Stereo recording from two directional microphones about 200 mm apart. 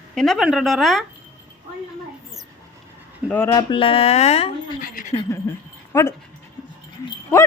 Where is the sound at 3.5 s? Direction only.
25° left (ahead or behind).